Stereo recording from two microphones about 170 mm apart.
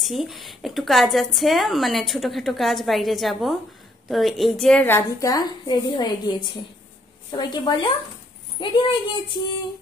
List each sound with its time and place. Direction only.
0.0 s a woman's voice: centre (ahead or behind); by 9.4 s 30° left (ahead or behind)